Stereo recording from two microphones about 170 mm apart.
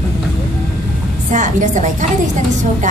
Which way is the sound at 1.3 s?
45° right (ahead or behind).